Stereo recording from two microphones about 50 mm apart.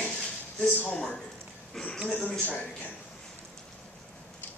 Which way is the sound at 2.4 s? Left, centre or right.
Left.